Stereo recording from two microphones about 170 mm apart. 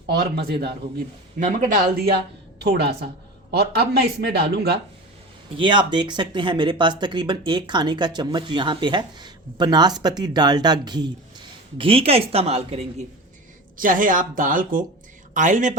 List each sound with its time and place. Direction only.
0.4 s speech: 70° right (ahead or behind)
1.4 s a woman's voice: 50° right (ahead or behind)
2.6 s speech: 75° right (ahead or behind)
5.5 s speech: 30° right (ahead or behind)
13.7 s a woman's voice: 55° right (ahead or behind)